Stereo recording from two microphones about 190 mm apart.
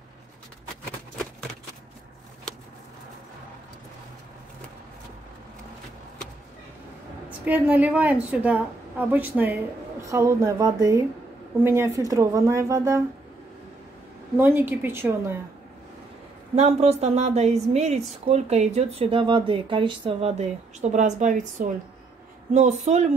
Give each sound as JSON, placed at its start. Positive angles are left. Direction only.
{"t": 7.2, "sound": "a woman's voice", "side_deg": -10}
{"t": 14.3, "sound": "a woman's voice", "side_deg": -10}
{"t": 16.5, "sound": "speech", "side_deg": -35}